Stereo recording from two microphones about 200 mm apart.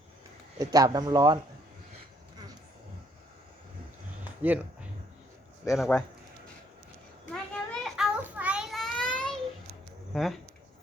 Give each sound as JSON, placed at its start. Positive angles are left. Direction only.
{"t": 0.6, "sound": "speech", "side_deg": -20}
{"t": 4.4, "sound": "speech", "side_deg": -10}
{"t": 5.6, "sound": "speech", "side_deg": 0}
{"t": 7.5, "sound": "child singing", "side_deg": 5}